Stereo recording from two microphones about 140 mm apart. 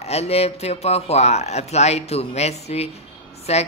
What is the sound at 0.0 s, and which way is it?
Speech, 50° left (ahead or behind).